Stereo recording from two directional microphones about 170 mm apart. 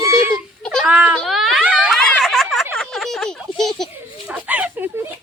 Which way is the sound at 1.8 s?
5° left (ahead or behind).